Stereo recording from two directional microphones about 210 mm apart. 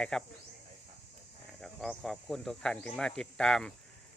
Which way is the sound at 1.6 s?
Centre (ahead or behind).